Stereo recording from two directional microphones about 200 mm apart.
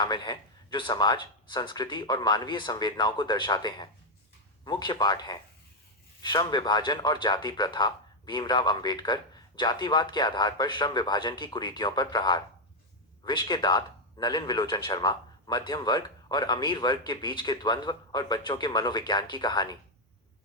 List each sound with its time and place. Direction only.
0.0 s a man's voice: 20° left (ahead or behind)